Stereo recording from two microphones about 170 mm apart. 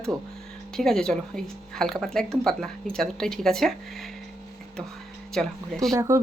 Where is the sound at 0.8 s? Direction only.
5° left (ahead or behind).